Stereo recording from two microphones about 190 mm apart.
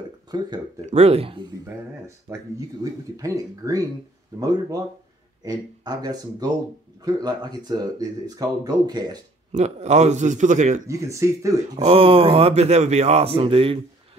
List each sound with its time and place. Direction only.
0.3 s speech: 20° right (ahead or behind)
0.8 s a man's voice: 35° right (ahead or behind)
2.3 s speech: 10° right (ahead or behind)
9.5 s a man's voice: 35° right (ahead or behind)
10.9 s speech: 15° right (ahead or behind)
11.8 s a man's voice: 30° right (ahead or behind)